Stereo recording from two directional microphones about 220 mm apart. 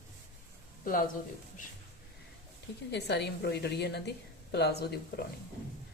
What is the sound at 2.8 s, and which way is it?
A woman's voice, 50° left (ahead or behind).